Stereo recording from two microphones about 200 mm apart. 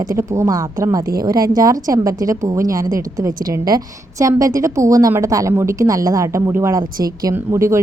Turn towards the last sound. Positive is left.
turn(degrees=-15)  # may be behind; listen again after turning